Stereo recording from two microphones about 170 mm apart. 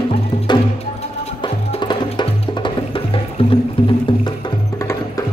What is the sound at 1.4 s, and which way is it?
Music, 30° left (ahead or behind).